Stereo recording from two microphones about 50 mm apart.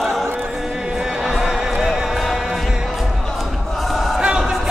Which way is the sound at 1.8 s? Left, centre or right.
Centre.